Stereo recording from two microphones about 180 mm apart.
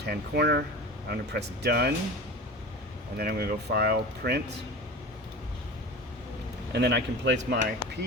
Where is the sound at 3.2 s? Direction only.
60° right (ahead or behind).